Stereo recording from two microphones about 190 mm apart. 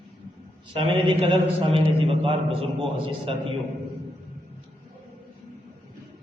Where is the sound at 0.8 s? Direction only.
30° right (ahead or behind).